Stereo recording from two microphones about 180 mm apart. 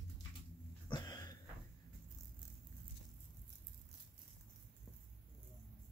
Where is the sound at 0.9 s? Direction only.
25° left (ahead or behind).